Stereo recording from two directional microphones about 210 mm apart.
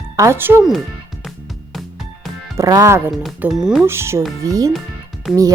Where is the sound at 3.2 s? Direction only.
Centre (ahead or behind).